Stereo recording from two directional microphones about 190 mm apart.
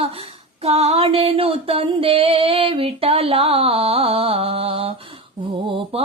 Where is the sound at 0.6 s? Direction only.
30° right (ahead or behind).